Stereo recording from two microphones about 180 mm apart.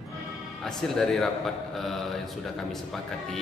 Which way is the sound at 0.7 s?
Centre (ahead or behind).